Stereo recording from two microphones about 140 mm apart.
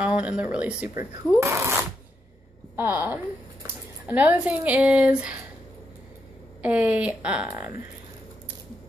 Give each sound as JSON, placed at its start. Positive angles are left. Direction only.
{"t": 0.0, "sound": "a sound", "side_deg": -10}
{"t": 0.4, "sound": "a woman's voice", "side_deg": -10}
{"t": 0.9, "sound": "a woman's voice", "side_deg": -20}
{"t": 6.6, "sound": "a woman's voice", "side_deg": -10}